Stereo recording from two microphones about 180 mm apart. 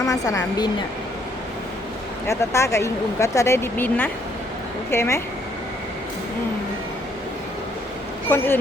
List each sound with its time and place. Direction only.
0.0 s a woman's voice: 20° left (ahead or behind)
2.2 s speech: 15° left (ahead or behind)
8.3 s speech: 15° left (ahead or behind)